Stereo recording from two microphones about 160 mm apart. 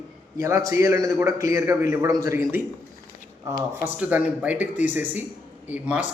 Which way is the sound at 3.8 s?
10° right (ahead or behind).